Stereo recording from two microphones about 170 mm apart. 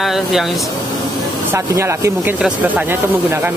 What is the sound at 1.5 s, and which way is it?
Speech, 15° right (ahead or behind).